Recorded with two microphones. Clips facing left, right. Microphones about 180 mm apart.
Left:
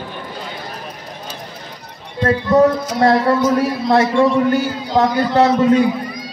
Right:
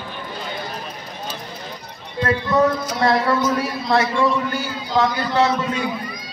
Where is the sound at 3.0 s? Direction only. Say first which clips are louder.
Left 5 dB; 35° left (ahead or behind).